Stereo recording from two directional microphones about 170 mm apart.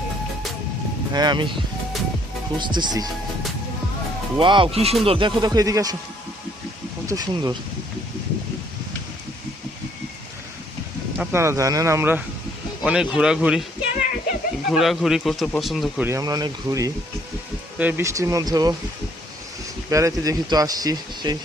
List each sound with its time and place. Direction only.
1.1 s speech: 25° right (ahead or behind)
2.6 s speech: 25° right (ahead or behind)
4.4 s speech: 30° right (ahead or behind)
7.1 s speech: 20° right (ahead or behind)
11.2 s speech: 15° right (ahead or behind)
14.7 s speech: centre (ahead or behind)
16.0 s speech: 20° right (ahead or behind)
19.9 s speech: 20° right (ahead or behind)